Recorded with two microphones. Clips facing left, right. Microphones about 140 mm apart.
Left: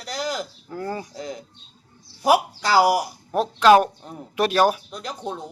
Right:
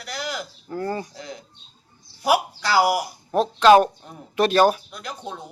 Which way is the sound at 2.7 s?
40° left (ahead or behind).